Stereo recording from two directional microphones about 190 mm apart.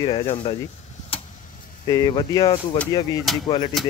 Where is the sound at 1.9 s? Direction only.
20° left (ahead or behind).